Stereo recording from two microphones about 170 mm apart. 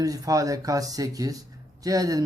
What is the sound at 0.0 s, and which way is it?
Speech, 20° right (ahead or behind).